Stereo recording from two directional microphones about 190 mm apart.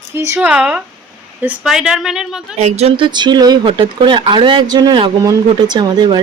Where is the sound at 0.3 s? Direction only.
5° right (ahead or behind).